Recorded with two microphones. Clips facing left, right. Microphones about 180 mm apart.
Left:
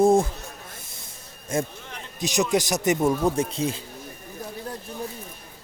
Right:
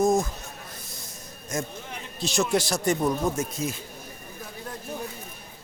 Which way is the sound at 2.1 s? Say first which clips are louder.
Left 2 dB; 15° left (ahead or behind).